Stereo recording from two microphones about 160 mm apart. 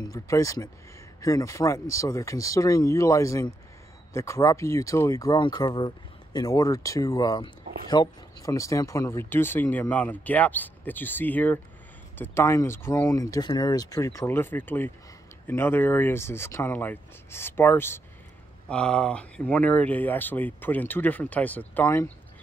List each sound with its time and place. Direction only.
0.0 s speech: 20° left (ahead or behind)